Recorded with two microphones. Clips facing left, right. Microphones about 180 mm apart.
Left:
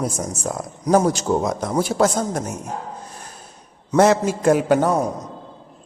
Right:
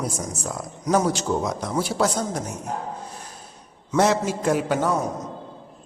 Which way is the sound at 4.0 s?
50° left (ahead or behind).